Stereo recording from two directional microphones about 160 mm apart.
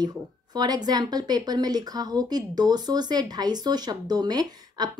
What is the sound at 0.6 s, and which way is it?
A woman's voice, 25° right (ahead or behind).